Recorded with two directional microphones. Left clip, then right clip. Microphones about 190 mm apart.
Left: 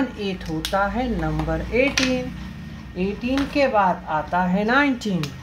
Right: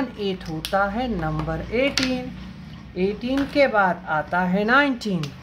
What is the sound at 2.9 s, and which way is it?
Speech, 30° right (ahead or behind).